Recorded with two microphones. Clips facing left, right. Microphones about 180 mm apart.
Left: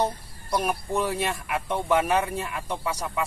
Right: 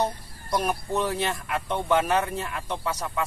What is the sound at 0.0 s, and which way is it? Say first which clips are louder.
Speech: left 1 dB; 10° left (ahead or behind).